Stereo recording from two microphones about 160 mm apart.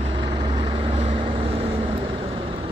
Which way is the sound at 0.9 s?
40° right (ahead or behind).